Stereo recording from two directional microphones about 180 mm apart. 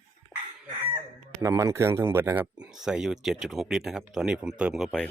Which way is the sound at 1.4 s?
15° right (ahead or behind).